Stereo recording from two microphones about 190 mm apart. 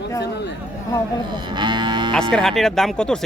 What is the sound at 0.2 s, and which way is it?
Speech, 65° left (ahead or behind).